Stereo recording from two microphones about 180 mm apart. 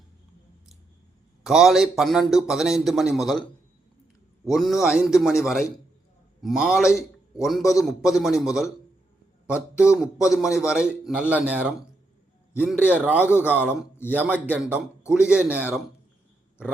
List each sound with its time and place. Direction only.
1.5 s a man's voice: centre (ahead or behind)
9.7 s a man's voice: 5° right (ahead or behind)